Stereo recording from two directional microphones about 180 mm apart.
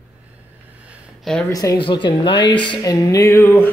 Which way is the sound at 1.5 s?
20° left (ahead or behind).